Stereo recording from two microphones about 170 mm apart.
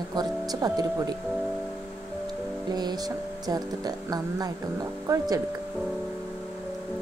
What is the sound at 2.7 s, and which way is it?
Speech, 25° right (ahead or behind).